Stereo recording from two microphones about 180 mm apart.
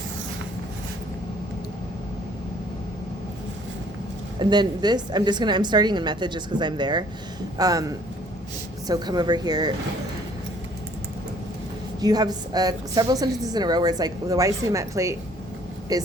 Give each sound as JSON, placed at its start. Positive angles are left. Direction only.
{"t": 4.4, "sound": "a woman's voice", "side_deg": -25}
{"t": 11.9, "sound": "a woman's voice", "side_deg": -20}